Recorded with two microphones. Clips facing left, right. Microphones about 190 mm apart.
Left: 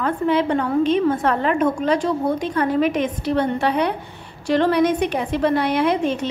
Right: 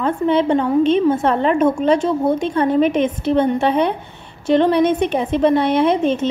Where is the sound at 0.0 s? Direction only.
25° right (ahead or behind).